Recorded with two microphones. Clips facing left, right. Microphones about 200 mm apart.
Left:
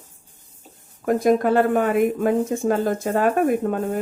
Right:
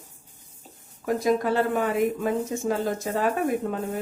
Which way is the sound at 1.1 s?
55° left (ahead or behind).